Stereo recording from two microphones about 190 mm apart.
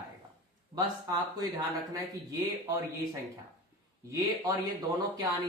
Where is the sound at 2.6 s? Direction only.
20° right (ahead or behind).